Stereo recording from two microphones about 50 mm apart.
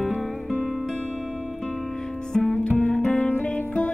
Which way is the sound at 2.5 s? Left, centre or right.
Centre.